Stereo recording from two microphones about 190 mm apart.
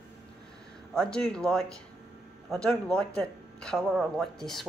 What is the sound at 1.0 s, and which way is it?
Speech, 5° left (ahead or behind).